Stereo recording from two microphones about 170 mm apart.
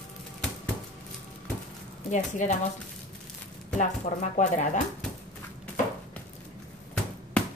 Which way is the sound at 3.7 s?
45° left (ahead or behind).